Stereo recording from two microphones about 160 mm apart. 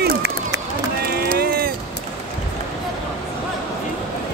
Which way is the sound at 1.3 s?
70° right (ahead or behind).